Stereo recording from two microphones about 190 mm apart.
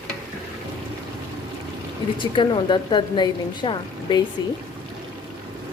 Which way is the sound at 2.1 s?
25° left (ahead or behind).